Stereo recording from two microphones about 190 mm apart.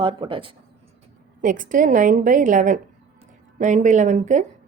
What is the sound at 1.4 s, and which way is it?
A woman's voice, 45° right (ahead or behind).